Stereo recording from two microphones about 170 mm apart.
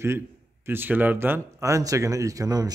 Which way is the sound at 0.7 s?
10° right (ahead or behind).